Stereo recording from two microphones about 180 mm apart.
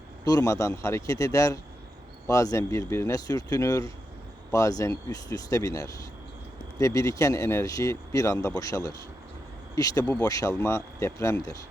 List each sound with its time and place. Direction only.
0.3 s speech: 20° left (ahead or behind)